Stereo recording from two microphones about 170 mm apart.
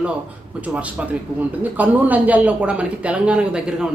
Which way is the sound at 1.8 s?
10° right (ahead or behind).